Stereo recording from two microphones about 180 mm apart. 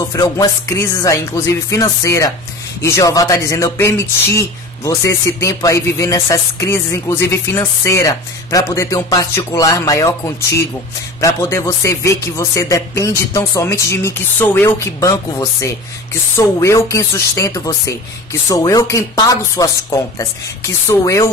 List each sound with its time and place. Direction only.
0.1 s speech: 15° left (ahead or behind)